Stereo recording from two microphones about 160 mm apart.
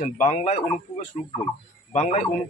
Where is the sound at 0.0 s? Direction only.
45° left (ahead or behind).